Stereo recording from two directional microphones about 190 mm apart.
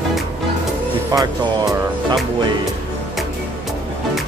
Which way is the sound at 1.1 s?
20° right (ahead or behind).